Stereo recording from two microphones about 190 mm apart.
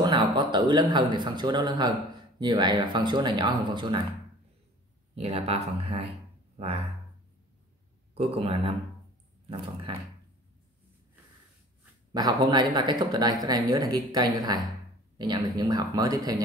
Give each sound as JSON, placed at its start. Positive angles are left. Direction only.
{"t": 0.0, "sound": "a man's voice", "side_deg": -25}
{"t": 5.1, "sound": "speech", "side_deg": -35}
{"t": 8.1, "sound": "a man's voice", "side_deg": -30}
{"t": 12.1, "sound": "a man's voice", "side_deg": -20}